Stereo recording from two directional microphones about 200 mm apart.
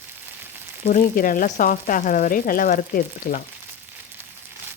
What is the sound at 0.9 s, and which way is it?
Speech, 40° left (ahead or behind).